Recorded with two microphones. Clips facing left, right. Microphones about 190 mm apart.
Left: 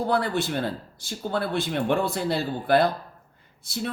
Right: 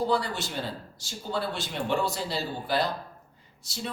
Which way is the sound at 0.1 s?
55° left (ahead or behind).